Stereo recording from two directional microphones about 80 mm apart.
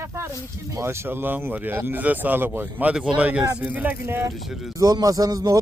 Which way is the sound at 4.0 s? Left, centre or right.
Right.